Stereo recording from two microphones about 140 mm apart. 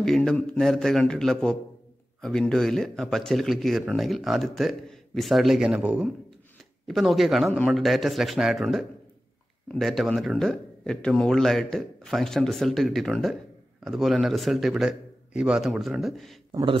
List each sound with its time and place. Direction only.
0.0 s speech: 5° left (ahead or behind)